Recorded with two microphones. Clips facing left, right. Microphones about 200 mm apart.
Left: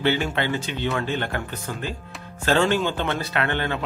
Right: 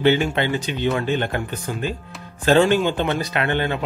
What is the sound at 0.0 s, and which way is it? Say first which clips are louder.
A man's voice: right 5 dB; 20° right (ahead or behind).